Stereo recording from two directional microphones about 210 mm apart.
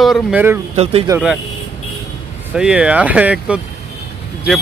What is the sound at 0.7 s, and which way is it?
Speech, 30° right (ahead or behind).